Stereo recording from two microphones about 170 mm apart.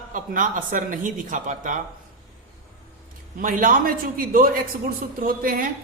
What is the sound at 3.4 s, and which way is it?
A man's voice, 50° right (ahead or behind).